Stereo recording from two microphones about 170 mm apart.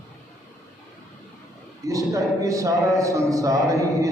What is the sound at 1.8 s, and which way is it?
Speech, 20° right (ahead or behind).